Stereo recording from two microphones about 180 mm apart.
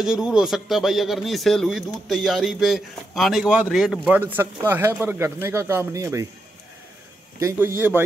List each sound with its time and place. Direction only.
0.0 s speech: 5° right (ahead or behind)
7.3 s a man's voice: 15° right (ahead or behind)